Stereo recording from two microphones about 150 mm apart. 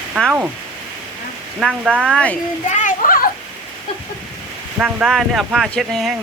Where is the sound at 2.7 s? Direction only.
60° left (ahead or behind).